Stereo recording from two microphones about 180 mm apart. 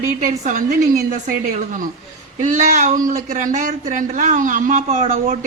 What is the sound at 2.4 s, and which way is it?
A man's voice, 40° right (ahead or behind).